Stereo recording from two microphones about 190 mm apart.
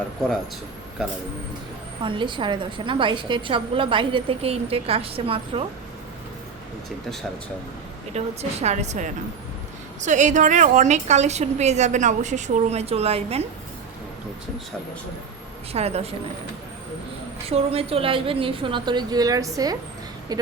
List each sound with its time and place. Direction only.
2.0 s a woman's voice: 25° right (ahead or behind)
8.1 s a woman's voice: 35° right (ahead or behind)
15.7 s a woman's voice: 35° right (ahead or behind)
17.4 s a woman's voice: 30° right (ahead or behind)
20.3 s a sound: 20° right (ahead or behind)